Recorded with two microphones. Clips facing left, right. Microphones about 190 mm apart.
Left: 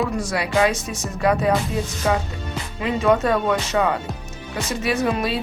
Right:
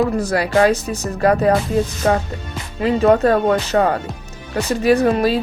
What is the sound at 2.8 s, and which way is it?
Speech, 35° right (ahead or behind).